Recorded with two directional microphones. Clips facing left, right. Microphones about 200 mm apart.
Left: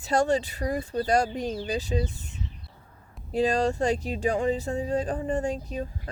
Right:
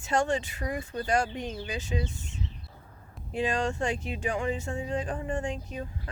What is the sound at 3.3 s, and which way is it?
Speech, 35° left (ahead or behind).